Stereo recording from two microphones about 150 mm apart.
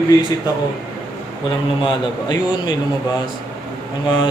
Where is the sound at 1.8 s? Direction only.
30° left (ahead or behind).